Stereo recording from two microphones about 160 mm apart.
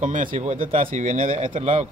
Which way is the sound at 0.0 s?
55° right (ahead or behind).